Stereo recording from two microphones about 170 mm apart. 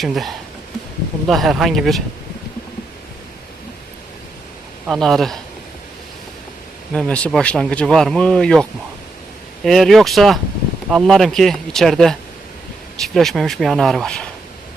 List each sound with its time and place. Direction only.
0.0 s speech: centre (ahead or behind)
1.3 s speech: centre (ahead or behind)
4.9 s speech: centre (ahead or behind)
6.9 s speech: 5° left (ahead or behind)
9.6 s speech: centre (ahead or behind)